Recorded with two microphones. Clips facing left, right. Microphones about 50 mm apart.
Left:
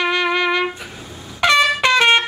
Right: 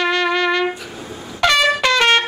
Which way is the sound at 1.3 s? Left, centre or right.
Centre.